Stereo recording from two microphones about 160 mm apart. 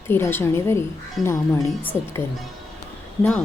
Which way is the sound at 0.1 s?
15° left (ahead or behind).